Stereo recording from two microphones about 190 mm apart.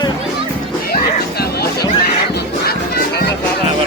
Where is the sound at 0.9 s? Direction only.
55° left (ahead or behind).